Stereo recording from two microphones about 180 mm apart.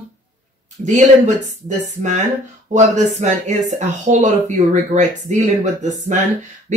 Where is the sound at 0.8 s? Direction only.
40° right (ahead or behind).